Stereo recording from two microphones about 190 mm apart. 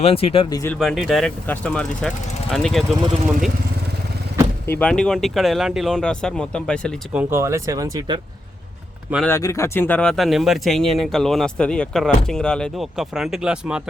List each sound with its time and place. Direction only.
0.0 s speech: 30° left (ahead or behind)
0.6 s speech: 5° left (ahead or behind)
4.6 s speech: 10° left (ahead or behind)
7.1 s speech: 10° right (ahead or behind)
9.2 s speech: 15° left (ahead or behind); by 13.8 s 5° right (ahead or behind)